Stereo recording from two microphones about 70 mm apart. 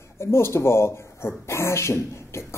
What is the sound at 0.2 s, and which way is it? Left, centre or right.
A man's voice, left.